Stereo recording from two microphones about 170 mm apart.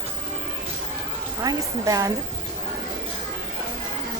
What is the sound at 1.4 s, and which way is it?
Speech, 20° right (ahead or behind).